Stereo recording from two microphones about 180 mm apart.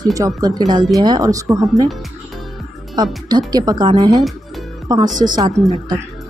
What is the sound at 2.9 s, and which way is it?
Speech, 20° right (ahead or behind).